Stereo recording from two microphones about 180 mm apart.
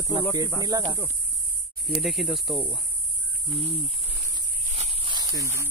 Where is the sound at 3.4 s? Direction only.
30° right (ahead or behind).